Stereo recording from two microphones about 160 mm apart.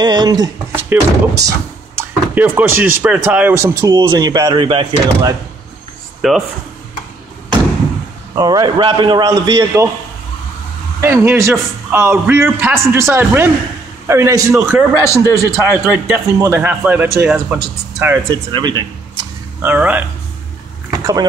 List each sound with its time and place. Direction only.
0.0 s speech: 25° right (ahead or behind)
6.2 s speech: centre (ahead or behind)
8.4 s speech: 25° right (ahead or behind)
11.0 s speech: 15° right (ahead or behind)
18.3 s speech: 30° right (ahead or behind)
19.6 s speech: 10° right (ahead or behind)
20.9 s a sound: 20° right (ahead or behind)